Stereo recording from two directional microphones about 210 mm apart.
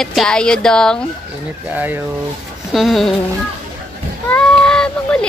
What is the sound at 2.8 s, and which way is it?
Speech, centre (ahead or behind).